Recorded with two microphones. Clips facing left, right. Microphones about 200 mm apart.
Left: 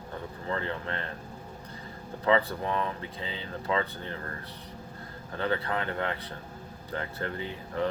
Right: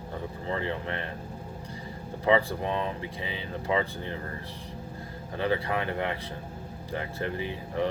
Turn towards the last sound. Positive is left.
turn(degrees=-15)  # may be behind; listen again after turning